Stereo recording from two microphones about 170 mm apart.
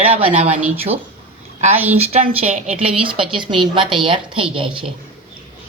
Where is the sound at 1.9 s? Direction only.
35° right (ahead or behind).